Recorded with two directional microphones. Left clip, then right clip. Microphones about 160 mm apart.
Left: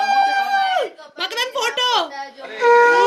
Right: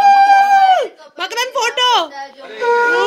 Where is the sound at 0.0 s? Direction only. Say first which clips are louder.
Right 8 dB; 5° left (ahead or behind).